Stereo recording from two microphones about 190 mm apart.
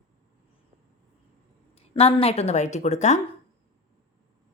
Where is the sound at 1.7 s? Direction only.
30° left (ahead or behind).